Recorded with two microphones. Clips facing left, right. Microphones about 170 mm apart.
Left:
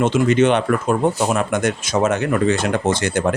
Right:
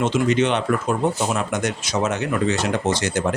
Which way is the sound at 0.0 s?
55° left (ahead or behind).